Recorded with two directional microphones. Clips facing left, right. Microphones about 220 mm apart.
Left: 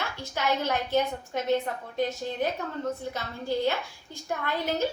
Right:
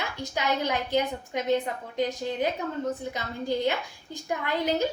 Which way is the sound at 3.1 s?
15° right (ahead or behind).